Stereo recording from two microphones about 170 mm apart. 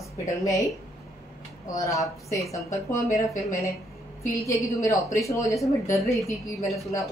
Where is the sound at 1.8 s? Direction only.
20° left (ahead or behind).